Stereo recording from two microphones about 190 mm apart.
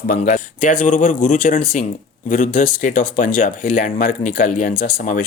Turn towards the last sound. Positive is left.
turn(degrees=45)  # may be behind; listen again after turning